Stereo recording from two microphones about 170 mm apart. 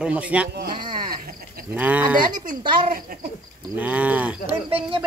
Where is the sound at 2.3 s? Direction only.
50° right (ahead or behind).